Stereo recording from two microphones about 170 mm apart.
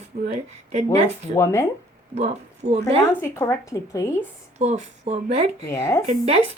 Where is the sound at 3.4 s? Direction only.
20° left (ahead or behind).